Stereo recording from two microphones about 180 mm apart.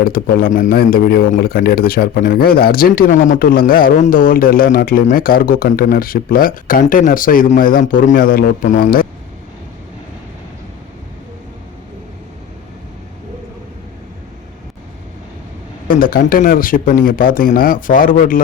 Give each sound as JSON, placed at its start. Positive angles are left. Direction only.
{"t": 0.0, "sound": "a man's voice", "side_deg": 55}
{"t": 15.9, "sound": "a man's voice", "side_deg": 50}